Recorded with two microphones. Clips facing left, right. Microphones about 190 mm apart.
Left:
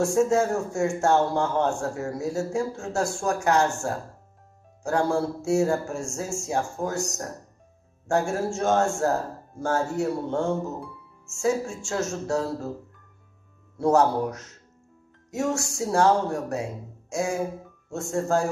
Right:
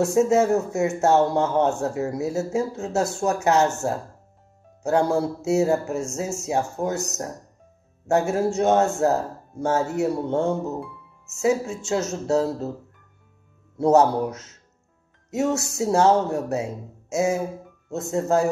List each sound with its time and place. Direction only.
0.0 s a man's voice: 20° right (ahead or behind)
8.1 s a man's voice: 20° right (ahead or behind)
13.7 s a man's voice: 20° right (ahead or behind)